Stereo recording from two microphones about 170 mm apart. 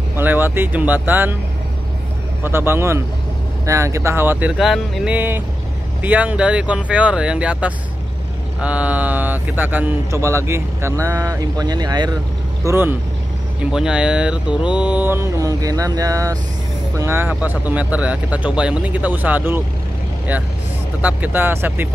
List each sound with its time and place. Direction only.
0.1 s mantra: 10° right (ahead or behind)
2.4 s mantra: 15° right (ahead or behind)
11.0 s speech: 20° right (ahead or behind)
12.6 s mantra: 15° right (ahead or behind)
21.0 s mantra: 10° right (ahead or behind)